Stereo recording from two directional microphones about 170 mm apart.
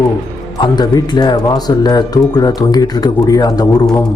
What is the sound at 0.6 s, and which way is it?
Speech, 25° left (ahead or behind).